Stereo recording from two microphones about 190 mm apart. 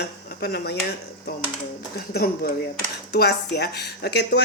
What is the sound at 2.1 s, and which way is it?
Speech, 55° left (ahead or behind).